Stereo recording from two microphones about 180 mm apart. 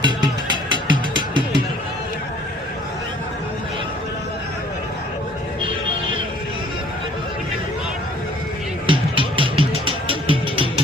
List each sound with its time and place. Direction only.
0.0 s music: 25° right (ahead or behind)
8.8 s music: 30° right (ahead or behind)